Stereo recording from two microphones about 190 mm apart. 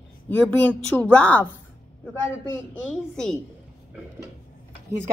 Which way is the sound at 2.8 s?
5° left (ahead or behind).